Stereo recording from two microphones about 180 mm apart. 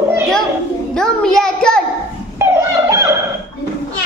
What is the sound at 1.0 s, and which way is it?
Child singing, 5° left (ahead or behind).